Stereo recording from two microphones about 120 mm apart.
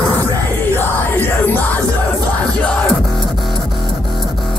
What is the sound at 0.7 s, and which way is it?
Music, 15° left (ahead or behind).